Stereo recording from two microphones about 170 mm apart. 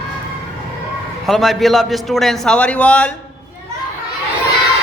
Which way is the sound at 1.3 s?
Centre (ahead or behind).